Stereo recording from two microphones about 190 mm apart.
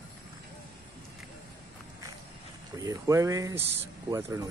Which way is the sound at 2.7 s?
15° right (ahead or behind).